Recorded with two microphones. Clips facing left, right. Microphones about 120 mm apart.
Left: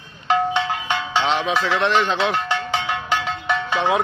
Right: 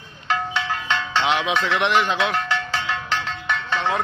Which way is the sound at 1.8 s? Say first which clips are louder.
Left 1 dB; 10° right (ahead or behind).